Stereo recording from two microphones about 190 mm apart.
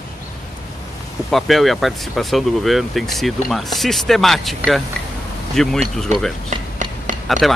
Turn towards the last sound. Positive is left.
turn(degrees=0)  # may be behind; listen again after turning